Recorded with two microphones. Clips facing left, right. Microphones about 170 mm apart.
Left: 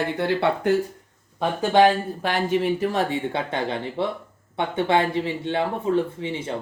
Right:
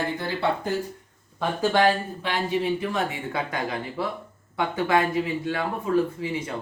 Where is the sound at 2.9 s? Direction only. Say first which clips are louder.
Left 4 dB; 30° left (ahead or behind).